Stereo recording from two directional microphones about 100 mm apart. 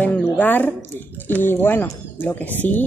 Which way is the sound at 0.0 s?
15° left (ahead or behind).